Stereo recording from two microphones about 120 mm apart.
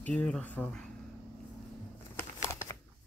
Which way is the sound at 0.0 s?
10° left (ahead or behind).